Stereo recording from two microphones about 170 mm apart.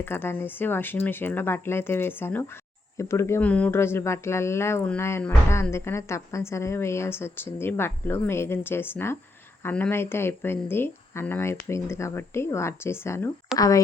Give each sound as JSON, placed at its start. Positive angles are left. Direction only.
{"t": 0.0, "sound": "a woman's voice", "side_deg": 10}